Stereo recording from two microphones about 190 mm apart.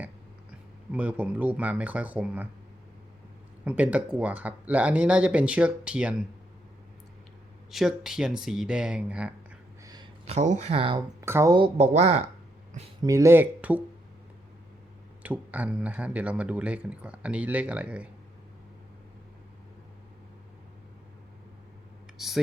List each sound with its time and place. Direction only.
0.9 s speech: 10° right (ahead or behind)
3.6 s speech: 5° right (ahead or behind)
7.7 s speech: centre (ahead or behind)
9.8 s a sound: 20° right (ahead or behind)
10.2 s speech: 35° right (ahead or behind); by 11.7 s 20° right (ahead or behind)
11.8 s speech: 35° right (ahead or behind)
13.0 s speech: 15° right (ahead or behind)
15.2 s speech: 10° right (ahead or behind)
22.2 s a sound: centre (ahead or behind)